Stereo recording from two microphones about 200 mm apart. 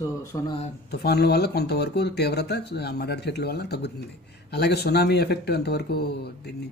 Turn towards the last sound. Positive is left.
turn(degrees=55)  # may be behind; listen again after turning